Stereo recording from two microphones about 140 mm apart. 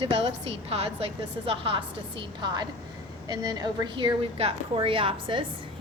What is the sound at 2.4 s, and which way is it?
A woman's voice, 30° right (ahead or behind).